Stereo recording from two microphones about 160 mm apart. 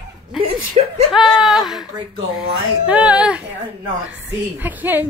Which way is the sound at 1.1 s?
Centre (ahead or behind).